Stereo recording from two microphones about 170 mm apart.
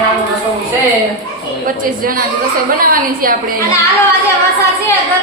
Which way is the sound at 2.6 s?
55° right (ahead or behind).